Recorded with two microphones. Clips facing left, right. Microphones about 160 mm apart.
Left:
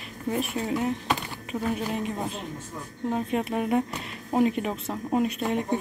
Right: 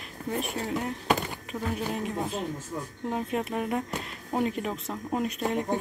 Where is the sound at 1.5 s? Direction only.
20° left (ahead or behind).